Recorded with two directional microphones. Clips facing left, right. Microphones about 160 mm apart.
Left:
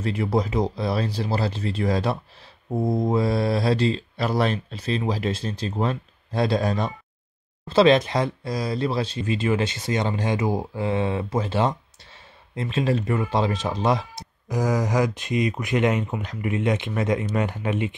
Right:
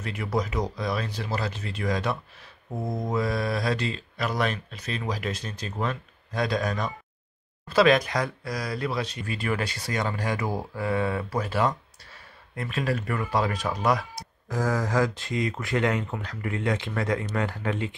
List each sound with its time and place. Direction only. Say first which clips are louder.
0.0 s speech: left 5 dB; 30° left (ahead or behind)